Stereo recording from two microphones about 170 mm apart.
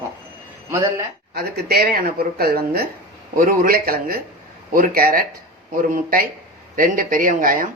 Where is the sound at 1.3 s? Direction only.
65° right (ahead or behind).